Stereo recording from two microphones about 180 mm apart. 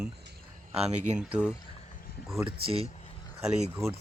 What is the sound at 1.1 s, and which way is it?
Speech, 5° right (ahead or behind).